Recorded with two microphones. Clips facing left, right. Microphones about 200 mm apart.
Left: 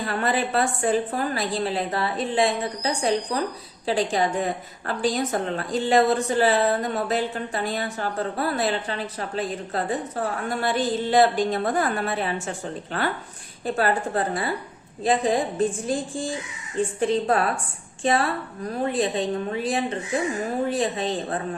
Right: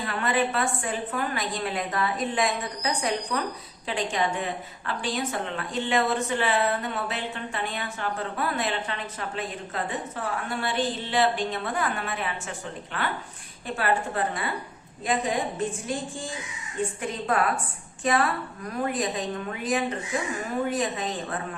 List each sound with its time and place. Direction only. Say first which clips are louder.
0.0 s a woman's voice: left 2 dB; 35° left (ahead or behind)
17.0 s a woman's voice: left 6 dB; 30° left (ahead or behind)